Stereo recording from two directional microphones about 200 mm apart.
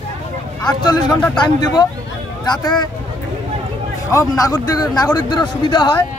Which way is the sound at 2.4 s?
20° left (ahead or behind).